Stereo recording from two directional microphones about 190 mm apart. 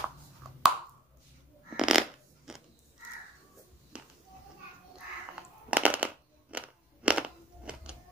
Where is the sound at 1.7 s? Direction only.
5° right (ahead or behind).